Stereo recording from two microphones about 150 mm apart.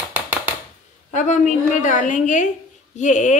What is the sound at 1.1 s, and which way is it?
A woman's voice, 55° left (ahead or behind).